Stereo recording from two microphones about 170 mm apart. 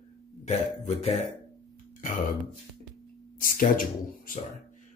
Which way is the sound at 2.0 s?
50° left (ahead or behind).